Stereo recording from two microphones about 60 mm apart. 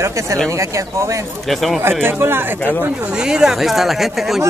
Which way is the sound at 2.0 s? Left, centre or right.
Right.